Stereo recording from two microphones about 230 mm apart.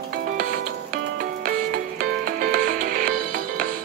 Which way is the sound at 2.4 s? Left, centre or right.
Right.